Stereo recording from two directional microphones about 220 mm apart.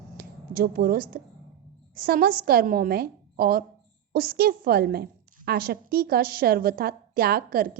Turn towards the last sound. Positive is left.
turn(degrees=-45)  # may be behind; listen again after turning